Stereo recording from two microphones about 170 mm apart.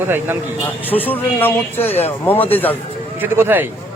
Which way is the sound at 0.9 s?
10° left (ahead or behind).